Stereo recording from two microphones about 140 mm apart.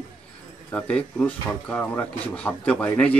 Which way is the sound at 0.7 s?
10° left (ahead or behind).